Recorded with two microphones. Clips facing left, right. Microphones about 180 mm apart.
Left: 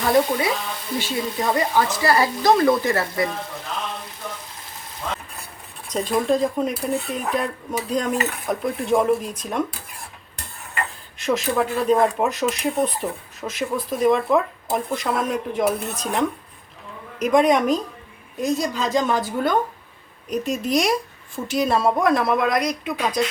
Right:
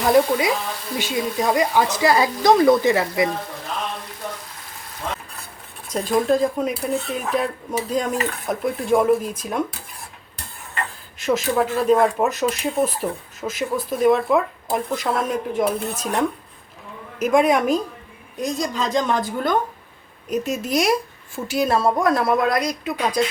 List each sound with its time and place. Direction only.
0.0 s speech: 15° right (ahead or behind)
5.9 s speech: 5° right (ahead or behind)
11.2 s speech: centre (ahead or behind)